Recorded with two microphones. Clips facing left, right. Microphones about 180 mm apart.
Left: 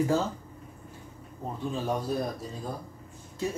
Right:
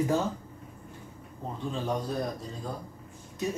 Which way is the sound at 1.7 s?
5° left (ahead or behind).